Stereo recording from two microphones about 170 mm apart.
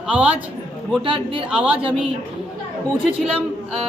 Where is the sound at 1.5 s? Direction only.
5° right (ahead or behind).